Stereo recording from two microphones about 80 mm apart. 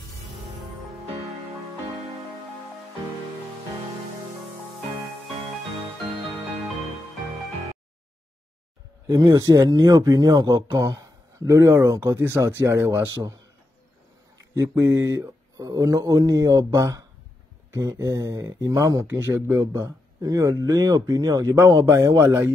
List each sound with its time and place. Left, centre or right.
9.0 s a man's voice: right
14.5 s speech: right
19.0 s speech: right
19.6 s speech: right